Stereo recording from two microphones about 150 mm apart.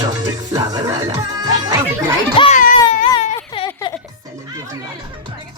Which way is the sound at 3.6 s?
40° left (ahead or behind).